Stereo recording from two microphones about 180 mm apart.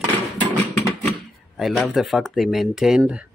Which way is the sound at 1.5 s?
Centre (ahead or behind).